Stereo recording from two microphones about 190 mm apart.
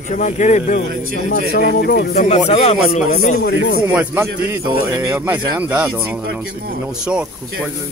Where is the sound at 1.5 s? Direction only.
55° left (ahead or behind).